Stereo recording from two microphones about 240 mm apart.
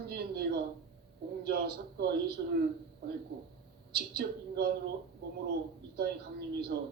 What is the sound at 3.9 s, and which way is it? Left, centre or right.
Speech, right.